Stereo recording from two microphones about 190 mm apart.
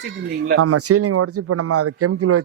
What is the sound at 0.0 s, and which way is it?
Speech, 65° right (ahead or behind).